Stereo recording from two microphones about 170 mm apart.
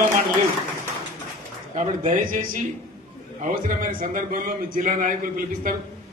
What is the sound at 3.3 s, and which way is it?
A man's voice, 50° right (ahead or behind).